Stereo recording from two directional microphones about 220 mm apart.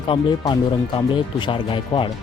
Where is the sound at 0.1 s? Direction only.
20° left (ahead or behind).